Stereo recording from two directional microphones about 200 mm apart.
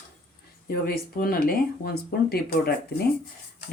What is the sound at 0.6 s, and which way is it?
Speech, 50° left (ahead or behind).